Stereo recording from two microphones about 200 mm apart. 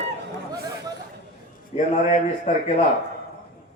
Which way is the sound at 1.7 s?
35° left (ahead or behind).